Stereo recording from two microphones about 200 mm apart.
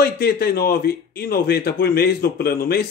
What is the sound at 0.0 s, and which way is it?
A man's voice, 50° left (ahead or behind).